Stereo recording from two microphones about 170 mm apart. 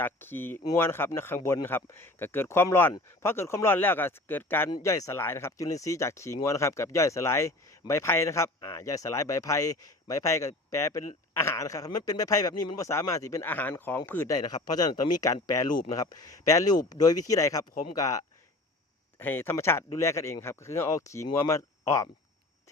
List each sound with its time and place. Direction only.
0.0 s speech: 10° left (ahead or behind)
19.2 s speech: 10° left (ahead or behind)